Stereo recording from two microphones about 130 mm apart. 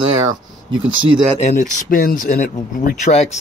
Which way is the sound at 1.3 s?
65° left (ahead or behind).